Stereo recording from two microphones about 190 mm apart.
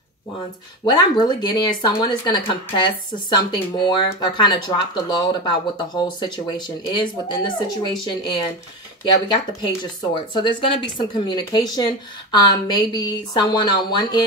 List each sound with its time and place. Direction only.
0.8 s speech: 20° left (ahead or behind)